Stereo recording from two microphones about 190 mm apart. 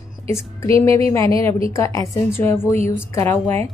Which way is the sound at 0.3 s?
15° left (ahead or behind).